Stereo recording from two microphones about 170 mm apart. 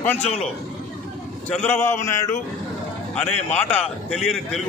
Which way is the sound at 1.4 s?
10° left (ahead or behind).